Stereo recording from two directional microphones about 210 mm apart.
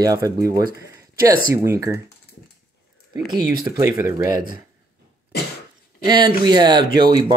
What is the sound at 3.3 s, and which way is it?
Speech, 20° right (ahead or behind).